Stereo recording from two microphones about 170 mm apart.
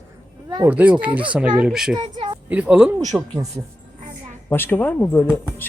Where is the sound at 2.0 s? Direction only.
30° right (ahead or behind).